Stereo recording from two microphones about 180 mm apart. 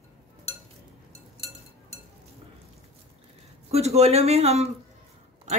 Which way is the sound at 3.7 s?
35° right (ahead or behind).